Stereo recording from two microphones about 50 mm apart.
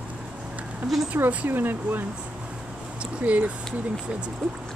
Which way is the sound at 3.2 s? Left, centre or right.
Right.